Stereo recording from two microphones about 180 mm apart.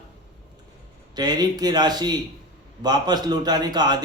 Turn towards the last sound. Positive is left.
turn(degrees=-20)  # may be behind; listen again after turning